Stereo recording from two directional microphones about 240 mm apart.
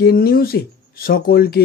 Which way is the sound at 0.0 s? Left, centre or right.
Left.